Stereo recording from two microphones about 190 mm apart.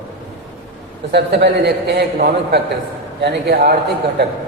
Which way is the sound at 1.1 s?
60° right (ahead or behind).